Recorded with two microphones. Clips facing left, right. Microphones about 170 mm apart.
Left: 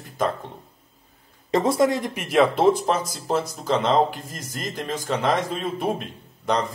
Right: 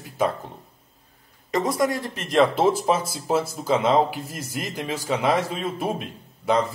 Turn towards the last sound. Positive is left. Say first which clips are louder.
# right 2 dB
turn(degrees=-5)  # may be behind; listen again after turning